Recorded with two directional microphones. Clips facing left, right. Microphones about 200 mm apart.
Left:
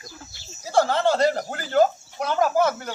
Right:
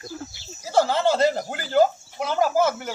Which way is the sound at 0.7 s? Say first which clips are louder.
Even; 5° right (ahead or behind).